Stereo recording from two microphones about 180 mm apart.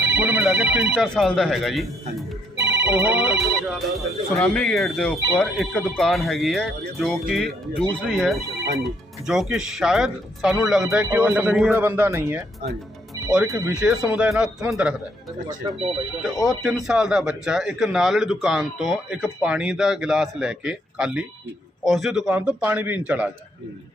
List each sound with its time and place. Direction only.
0.1 s a man's voice: 10° right (ahead or behind)
2.6 s a man's voice: 10° right (ahead or behind)
13.7 s a man's voice: 5° right (ahead or behind)
15.6 s speech: 25° right (ahead or behind)
16.2 s a man's voice: centre (ahead or behind)